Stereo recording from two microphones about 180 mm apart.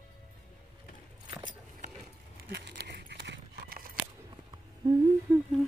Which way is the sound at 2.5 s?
65° right (ahead or behind).